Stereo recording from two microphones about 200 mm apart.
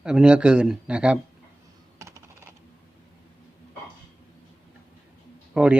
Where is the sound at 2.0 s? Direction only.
15° right (ahead or behind).